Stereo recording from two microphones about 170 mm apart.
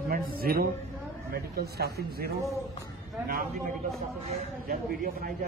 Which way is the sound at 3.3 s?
55° right (ahead or behind).